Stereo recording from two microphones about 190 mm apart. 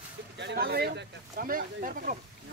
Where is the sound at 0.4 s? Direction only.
65° right (ahead or behind).